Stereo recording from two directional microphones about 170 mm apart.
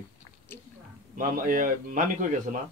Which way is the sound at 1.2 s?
55° right (ahead or behind).